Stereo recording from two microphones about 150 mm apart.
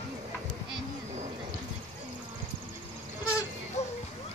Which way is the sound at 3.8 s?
50° left (ahead or behind).